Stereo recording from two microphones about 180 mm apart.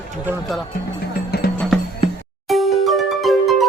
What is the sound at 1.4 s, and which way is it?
Music, 60° left (ahead or behind).